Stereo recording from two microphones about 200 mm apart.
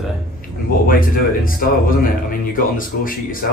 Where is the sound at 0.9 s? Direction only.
45° left (ahead or behind).